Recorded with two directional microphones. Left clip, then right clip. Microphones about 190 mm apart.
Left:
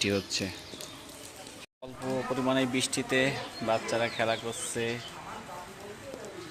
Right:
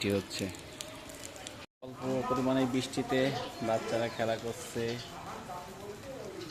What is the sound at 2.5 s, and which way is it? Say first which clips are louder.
Speech: left 3 dB; 10° left (ahead or behind).